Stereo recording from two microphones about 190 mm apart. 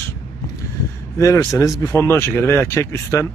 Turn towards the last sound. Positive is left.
turn(degrees=15)  # may be behind; listen again after turning